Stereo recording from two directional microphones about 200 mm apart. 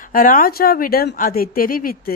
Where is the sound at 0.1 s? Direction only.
45° left (ahead or behind).